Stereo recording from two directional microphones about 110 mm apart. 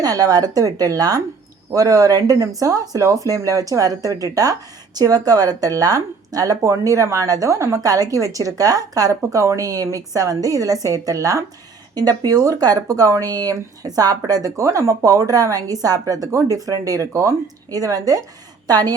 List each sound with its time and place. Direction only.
0.0 s speech: 35° right (ahead or behind)